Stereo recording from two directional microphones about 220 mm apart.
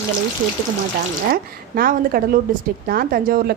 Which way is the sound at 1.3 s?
40° right (ahead or behind).